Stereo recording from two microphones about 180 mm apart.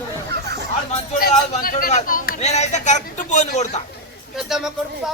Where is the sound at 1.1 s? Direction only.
55° left (ahead or behind).